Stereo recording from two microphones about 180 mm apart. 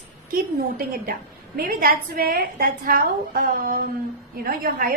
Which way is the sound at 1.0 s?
55° right (ahead or behind).